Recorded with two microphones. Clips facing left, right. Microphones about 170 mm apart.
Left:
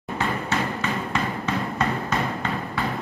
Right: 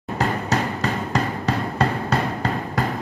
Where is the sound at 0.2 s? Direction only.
40° right (ahead or behind).